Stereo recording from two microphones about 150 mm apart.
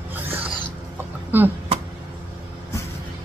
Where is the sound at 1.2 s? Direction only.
10° right (ahead or behind).